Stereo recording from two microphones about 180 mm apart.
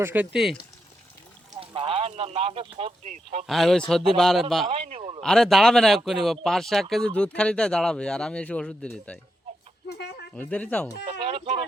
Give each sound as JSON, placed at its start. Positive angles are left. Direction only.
{"t": 0.0, "sound": "speech", "side_deg": -10}
{"t": 1.5, "sound": "speech", "side_deg": -30}
{"t": 3.4, "sound": "speech", "side_deg": 0}
{"t": 4.7, "sound": "speech", "side_deg": -35}
{"t": 5.2, "sound": "speech", "side_deg": 5}
{"t": 9.9, "sound": "a sound", "side_deg": 65}
{"t": 10.3, "sound": "speech", "side_deg": 10}
{"t": 11.2, "sound": "speech", "side_deg": -30}